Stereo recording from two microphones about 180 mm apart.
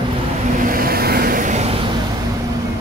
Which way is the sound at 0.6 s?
50° right (ahead or behind).